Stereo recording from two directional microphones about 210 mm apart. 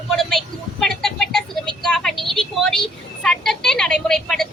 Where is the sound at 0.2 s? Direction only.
Centre (ahead or behind).